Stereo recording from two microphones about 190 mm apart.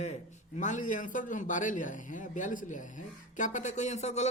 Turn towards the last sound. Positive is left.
turn(degrees=35)  # may be behind; listen again after turning